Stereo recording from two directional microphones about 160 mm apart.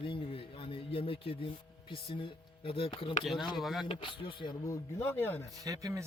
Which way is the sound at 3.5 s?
Centre (ahead or behind).